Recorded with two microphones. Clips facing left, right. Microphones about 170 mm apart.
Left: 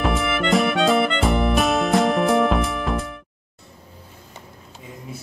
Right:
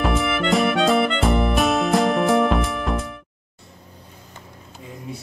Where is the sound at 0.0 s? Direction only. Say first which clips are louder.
Right 1 dB; centre (ahead or behind).